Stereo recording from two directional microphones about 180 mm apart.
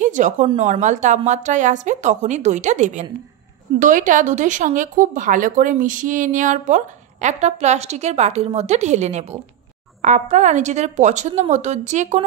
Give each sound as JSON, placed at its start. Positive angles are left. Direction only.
{"t": 0.0, "sound": "speech", "side_deg": -45}